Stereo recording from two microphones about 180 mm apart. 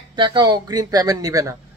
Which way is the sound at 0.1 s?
25° right (ahead or behind).